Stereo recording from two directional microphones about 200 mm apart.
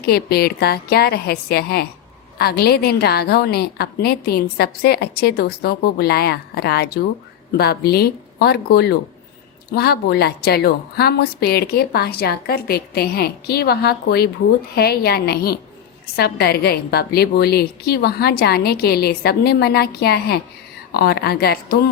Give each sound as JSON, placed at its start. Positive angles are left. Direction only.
{"t": 0.0, "sound": "a woman's voice", "side_deg": 50}